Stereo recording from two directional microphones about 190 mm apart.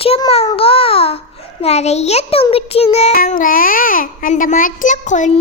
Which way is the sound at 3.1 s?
45° left (ahead or behind).